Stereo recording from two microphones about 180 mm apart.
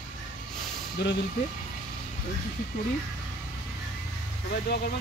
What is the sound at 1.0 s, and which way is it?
Speech, 65° left (ahead or behind).